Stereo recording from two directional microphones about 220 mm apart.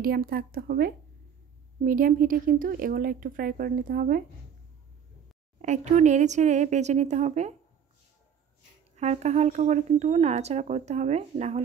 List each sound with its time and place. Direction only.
0.0 s speech: 40° right (ahead or behind)
5.6 s speech: 30° right (ahead or behind)
8.9 s speech: 30° right (ahead or behind)